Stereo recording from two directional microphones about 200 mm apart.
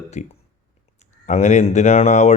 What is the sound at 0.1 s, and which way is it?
Speech, 35° left (ahead or behind).